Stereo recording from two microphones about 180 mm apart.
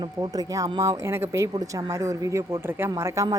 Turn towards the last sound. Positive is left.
turn(degrees=-15)  # may be behind; listen again after turning